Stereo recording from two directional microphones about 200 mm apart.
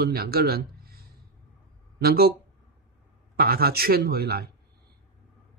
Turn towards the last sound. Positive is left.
turn(degrees=-50)  # may be behind; listen again after turning